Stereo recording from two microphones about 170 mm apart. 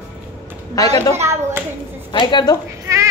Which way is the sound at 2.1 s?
25° left (ahead or behind).